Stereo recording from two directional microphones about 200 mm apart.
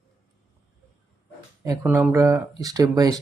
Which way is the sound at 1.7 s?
10° right (ahead or behind).